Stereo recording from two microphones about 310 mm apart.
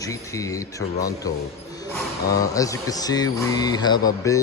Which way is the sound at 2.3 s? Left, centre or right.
Centre.